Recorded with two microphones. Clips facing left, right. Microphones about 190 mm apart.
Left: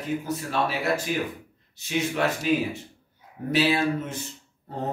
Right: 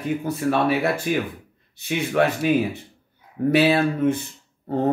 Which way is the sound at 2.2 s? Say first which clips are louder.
Right 7 dB; 55° right (ahead or behind).